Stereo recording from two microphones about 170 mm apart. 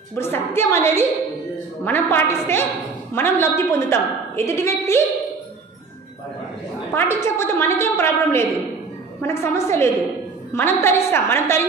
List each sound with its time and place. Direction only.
0.1 s a woman's voice: 15° left (ahead or behind)
7.0 s a woman's voice: 15° left (ahead or behind)